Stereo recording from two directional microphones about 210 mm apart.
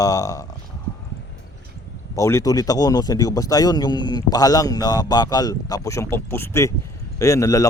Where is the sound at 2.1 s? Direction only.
15° left (ahead or behind).